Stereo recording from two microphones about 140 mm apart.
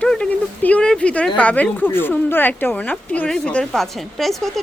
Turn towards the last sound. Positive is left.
turn(degrees=0)  # may be behind; listen again after turning